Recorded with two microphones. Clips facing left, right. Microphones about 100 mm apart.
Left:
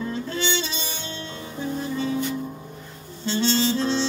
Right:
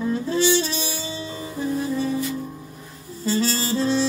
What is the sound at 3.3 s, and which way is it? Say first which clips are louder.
Harmonica: even; 5° right (ahead or behind).